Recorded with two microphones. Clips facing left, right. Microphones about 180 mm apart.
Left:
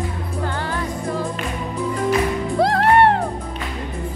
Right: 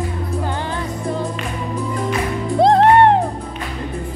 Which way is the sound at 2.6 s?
20° right (ahead or behind).